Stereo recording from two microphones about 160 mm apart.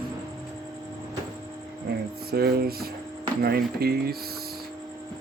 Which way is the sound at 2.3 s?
75° right (ahead or behind).